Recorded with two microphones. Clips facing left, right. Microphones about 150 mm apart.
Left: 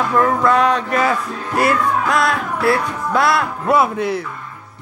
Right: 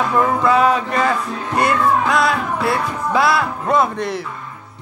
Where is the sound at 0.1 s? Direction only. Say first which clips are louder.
Left 1 dB; 5° right (ahead or behind).